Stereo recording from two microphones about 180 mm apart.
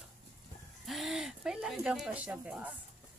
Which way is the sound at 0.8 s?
Centre (ahead or behind).